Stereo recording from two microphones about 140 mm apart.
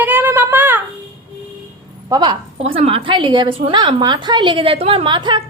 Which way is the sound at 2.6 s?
40° right (ahead or behind).